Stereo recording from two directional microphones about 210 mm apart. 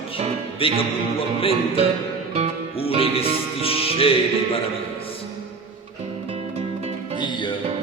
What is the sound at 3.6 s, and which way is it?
Music, 25° left (ahead or behind).